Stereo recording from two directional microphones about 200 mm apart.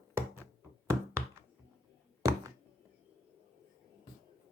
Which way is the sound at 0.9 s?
15° right (ahead or behind).